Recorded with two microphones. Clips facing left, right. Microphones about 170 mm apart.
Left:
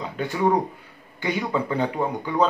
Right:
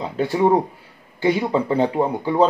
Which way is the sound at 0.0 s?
30° right (ahead or behind).